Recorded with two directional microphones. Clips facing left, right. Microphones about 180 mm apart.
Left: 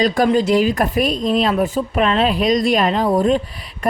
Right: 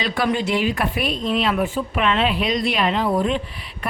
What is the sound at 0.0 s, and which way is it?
Speech, 45° left (ahead or behind).